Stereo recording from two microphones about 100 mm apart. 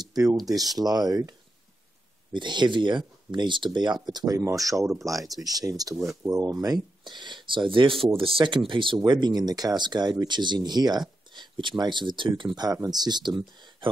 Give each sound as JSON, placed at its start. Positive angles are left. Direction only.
{"t": 0.4, "sound": "speech", "side_deg": -40}
{"t": 2.3, "sound": "speech", "side_deg": -50}
{"t": 4.8, "sound": "speech", "side_deg": 0}
{"t": 5.3, "sound": "speech", "side_deg": -40}